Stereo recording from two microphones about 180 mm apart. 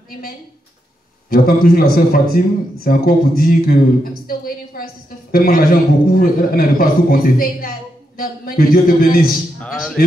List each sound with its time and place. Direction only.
1.3 s a man's voice: 55° left (ahead or behind)
9.6 s speech: centre (ahead or behind)